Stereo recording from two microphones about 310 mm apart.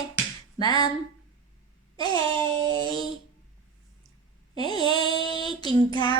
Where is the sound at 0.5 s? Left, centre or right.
Centre.